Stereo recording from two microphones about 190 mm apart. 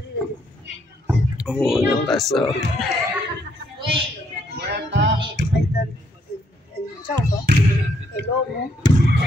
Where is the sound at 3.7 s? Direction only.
30° right (ahead or behind).